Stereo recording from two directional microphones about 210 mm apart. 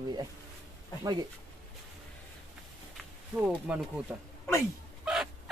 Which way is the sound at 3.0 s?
5° right (ahead or behind).